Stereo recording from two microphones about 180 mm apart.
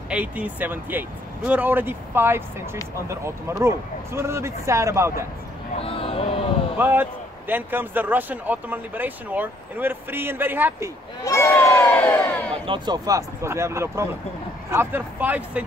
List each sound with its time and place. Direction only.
0.1 s a man's voice: 10° right (ahead or behind)
5.8 s speech: 30° left (ahead or behind)
6.8 s a man's voice: 10° right (ahead or behind)
11.2 s crowd: 15° left (ahead or behind)
12.6 s a man's voice: 25° right (ahead or behind); by 15.6 s 10° right (ahead or behind)